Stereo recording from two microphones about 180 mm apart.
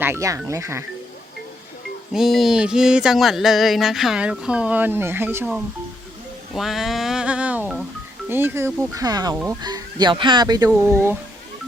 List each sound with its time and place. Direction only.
0.0 s speech: 15° right (ahead or behind)
2.1 s a sound: centre (ahead or behind)
6.5 s speech: centre (ahead or behind); by 10.7 s 20° right (ahead or behind)
10.7 s speech: 10° right (ahead or behind)